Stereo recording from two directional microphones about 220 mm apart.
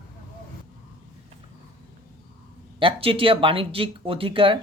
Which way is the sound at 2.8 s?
25° right (ahead or behind).